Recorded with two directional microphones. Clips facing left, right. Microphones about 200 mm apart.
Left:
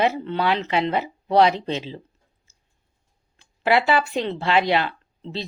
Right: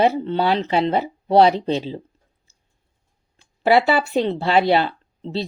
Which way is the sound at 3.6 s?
40° right (ahead or behind).